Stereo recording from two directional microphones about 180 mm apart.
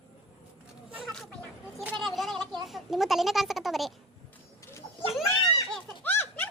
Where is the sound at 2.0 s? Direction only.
Centre (ahead or behind).